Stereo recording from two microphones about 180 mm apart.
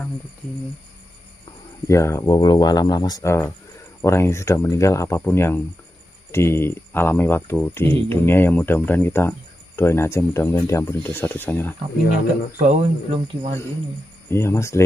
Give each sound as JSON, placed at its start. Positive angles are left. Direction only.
{"t": 1.9, "sound": "speech", "side_deg": 15}
{"t": 12.5, "sound": "speech", "side_deg": -40}
{"t": 14.3, "sound": "speech", "side_deg": 15}